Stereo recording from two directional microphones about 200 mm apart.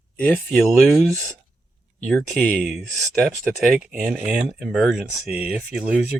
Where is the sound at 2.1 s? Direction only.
Centre (ahead or behind).